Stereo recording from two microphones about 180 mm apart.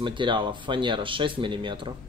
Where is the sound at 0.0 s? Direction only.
25° right (ahead or behind).